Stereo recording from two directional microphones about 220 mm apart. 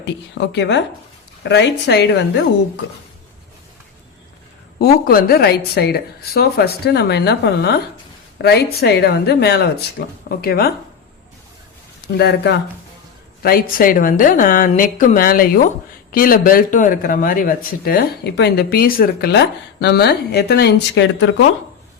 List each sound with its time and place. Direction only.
0.0 s a woman's voice: 55° left (ahead or behind)
4.8 s a woman's voice: 45° left (ahead or behind)
12.1 s a woman's voice: 50° left (ahead or behind)